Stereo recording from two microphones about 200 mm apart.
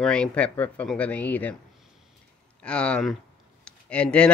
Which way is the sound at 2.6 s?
5° left (ahead or behind).